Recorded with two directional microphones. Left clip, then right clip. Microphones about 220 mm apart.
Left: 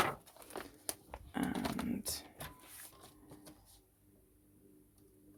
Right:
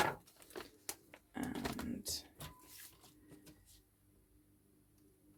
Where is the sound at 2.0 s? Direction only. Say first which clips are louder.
Even; 25° left (ahead or behind).